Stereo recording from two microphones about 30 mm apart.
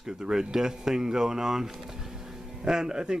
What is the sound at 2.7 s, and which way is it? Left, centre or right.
Speech, right.